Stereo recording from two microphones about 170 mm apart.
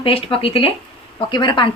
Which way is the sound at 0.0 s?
30° left (ahead or behind).